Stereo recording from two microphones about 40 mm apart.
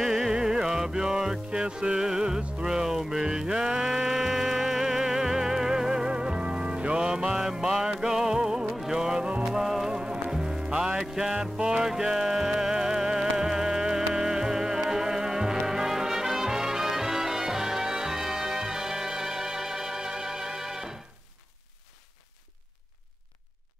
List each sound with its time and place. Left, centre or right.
0.0 s music: centre; by 7.1 s right
7.1 s music: centre
8.6 s music: centre
8.9 s music: centre
9.5 s music: centre
9.9 s music: right
11.3 s music: right